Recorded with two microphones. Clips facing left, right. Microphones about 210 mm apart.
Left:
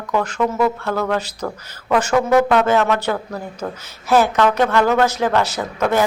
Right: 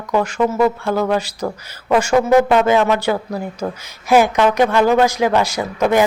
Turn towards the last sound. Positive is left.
turn(degrees=-15)  # may be behind; listen again after turning